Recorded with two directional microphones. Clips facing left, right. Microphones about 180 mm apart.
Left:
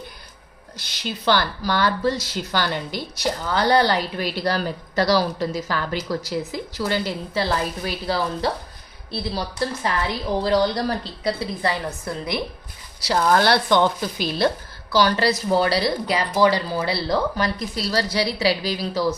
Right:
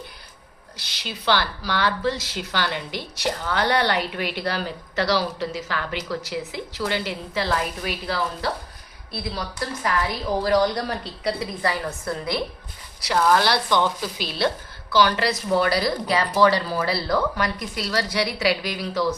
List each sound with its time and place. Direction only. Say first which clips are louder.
0.8 s a woman's voice: left 5 dB; 50° left (ahead or behind); by 12.4 s 20° left (ahead or behind)
13.0 s speech: even; 35° left (ahead or behind)
13.3 s speech: left 3 dB; 50° left (ahead or behind)
14.9 s speech: left 1 dB; 35° left (ahead or behind)
16.1 s speech: right 1 dB; 15° left (ahead or behind); by 18.9 s 30° left (ahead or behind)